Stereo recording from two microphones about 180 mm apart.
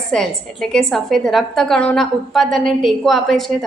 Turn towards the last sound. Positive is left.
turn(degrees=0)  # may be behind; listen again after turning